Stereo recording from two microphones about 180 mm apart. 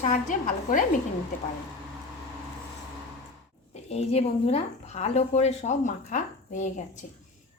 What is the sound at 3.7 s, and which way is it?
A woman's voice, 35° left (ahead or behind).